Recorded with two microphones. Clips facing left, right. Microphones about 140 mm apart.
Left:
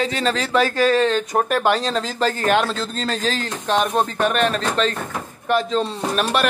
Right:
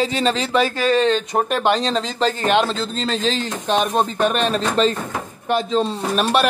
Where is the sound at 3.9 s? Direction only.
25° right (ahead or behind).